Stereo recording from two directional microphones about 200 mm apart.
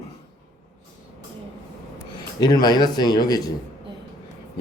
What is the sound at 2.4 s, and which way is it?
A man's voice, 20° left (ahead or behind).